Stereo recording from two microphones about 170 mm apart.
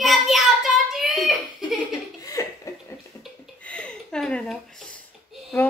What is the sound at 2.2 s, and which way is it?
Chuckle, 20° left (ahead or behind).